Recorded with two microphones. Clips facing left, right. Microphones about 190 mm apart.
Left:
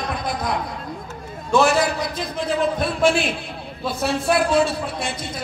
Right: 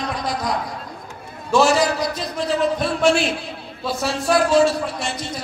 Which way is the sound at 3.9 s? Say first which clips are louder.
Right 1 dB; 55° left (ahead or behind).